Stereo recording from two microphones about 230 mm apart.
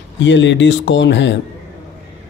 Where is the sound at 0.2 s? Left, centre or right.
Left.